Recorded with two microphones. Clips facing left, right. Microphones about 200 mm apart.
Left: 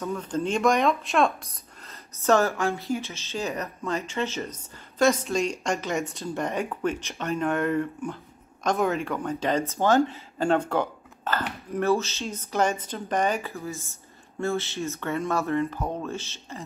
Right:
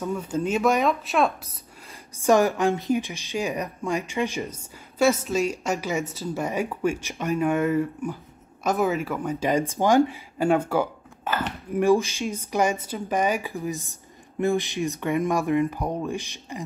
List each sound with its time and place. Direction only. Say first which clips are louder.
0.0 s speech: right 2 dB; 10° right (ahead or behind)